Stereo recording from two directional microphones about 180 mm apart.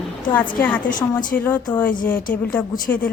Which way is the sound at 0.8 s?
45° left (ahead or behind).